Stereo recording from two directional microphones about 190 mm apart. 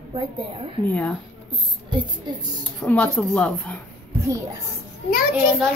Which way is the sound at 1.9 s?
25° right (ahead or behind).